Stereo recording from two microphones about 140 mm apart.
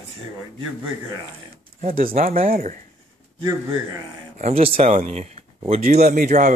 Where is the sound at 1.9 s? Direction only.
90° right.